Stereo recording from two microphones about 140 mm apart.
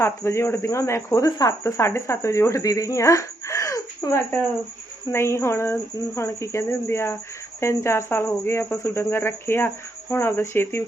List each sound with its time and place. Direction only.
0.0 s speech: 20° left (ahead or behind)